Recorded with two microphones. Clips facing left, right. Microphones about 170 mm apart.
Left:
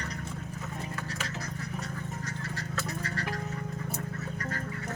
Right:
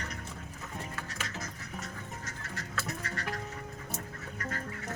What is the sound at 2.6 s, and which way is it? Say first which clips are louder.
Music: left 1 dB; 35° left (ahead or behind).